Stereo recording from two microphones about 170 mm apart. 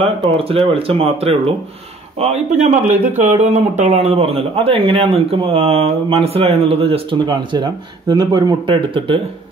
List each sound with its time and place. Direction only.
0.0 s speech: 35° right (ahead or behind)